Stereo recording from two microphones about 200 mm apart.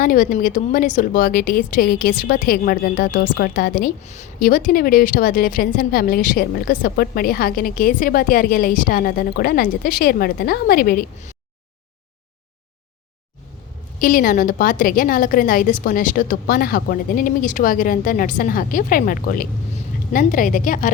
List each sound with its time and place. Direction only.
0.0 s speech: 45° left (ahead or behind)
14.0 s speech: 45° left (ahead or behind)